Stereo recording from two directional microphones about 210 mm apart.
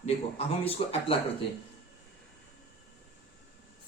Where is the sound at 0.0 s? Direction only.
30° left (ahead or behind).